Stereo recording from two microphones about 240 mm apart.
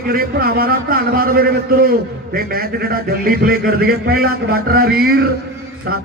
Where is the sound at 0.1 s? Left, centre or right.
Right.